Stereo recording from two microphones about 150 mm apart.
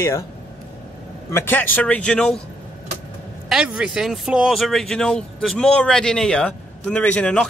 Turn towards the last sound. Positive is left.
turn(degrees=5)  # may be behind; listen again after turning